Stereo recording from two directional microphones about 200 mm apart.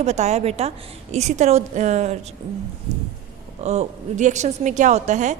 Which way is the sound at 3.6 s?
35° right (ahead or behind).